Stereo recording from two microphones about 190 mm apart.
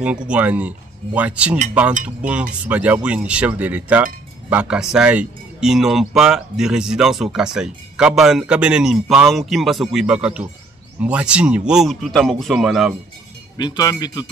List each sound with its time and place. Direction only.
0.3 s speech: 5° right (ahead or behind)
13.6 s speech: 20° left (ahead or behind)